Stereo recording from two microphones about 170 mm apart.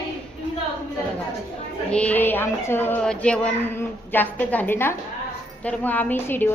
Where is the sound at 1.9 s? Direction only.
10° left (ahead or behind).